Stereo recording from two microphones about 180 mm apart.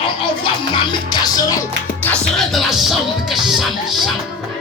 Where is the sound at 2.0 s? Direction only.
Centre (ahead or behind).